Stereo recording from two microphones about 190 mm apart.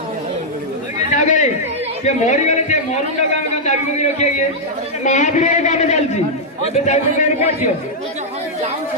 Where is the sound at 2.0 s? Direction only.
40° left (ahead or behind).